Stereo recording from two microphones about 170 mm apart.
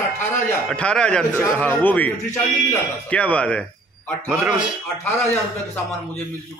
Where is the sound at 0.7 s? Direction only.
5° left (ahead or behind).